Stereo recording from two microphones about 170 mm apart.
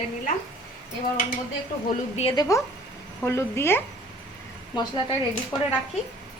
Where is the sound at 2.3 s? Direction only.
25° left (ahead or behind).